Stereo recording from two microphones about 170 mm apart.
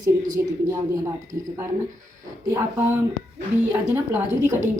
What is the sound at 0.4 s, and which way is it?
Speech, 15° right (ahead or behind).